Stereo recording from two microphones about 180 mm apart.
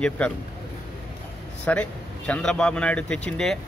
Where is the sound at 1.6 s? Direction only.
5° left (ahead or behind).